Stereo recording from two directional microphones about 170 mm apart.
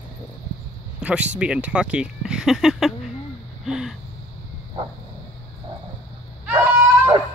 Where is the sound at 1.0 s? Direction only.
5° right (ahead or behind).